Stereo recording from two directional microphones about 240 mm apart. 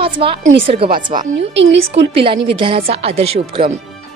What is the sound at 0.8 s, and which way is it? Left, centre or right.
Speech, right.